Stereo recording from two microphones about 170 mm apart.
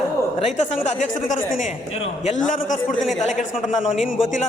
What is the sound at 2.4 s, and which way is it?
Speech, 50° left (ahead or behind).